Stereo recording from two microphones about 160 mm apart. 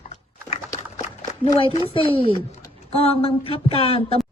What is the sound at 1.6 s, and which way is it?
A woman's voice, 35° left (ahead or behind).